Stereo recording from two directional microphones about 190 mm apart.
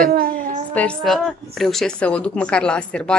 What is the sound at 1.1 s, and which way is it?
A woman's voice, centre (ahead or behind).